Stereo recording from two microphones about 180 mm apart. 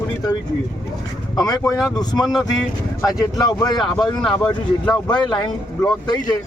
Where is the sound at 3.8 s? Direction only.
Centre (ahead or behind).